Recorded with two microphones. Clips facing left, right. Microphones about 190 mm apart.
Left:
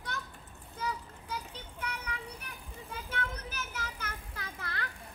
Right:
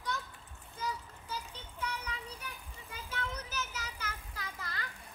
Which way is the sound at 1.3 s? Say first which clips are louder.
Left 2 dB; 60° left (ahead or behind).